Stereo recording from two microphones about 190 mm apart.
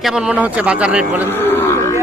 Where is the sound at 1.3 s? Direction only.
10° left (ahead or behind).